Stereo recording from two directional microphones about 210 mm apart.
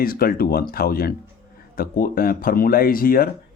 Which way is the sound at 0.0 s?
45° left (ahead or behind).